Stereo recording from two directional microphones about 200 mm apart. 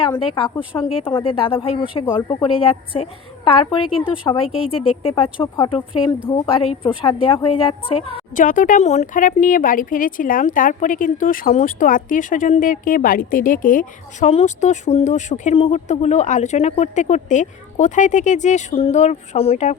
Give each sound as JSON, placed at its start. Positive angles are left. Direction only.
{"t": 0.8, "sound": "a woman's voice", "side_deg": 25}
{"t": 8.4, "sound": "speech", "side_deg": 40}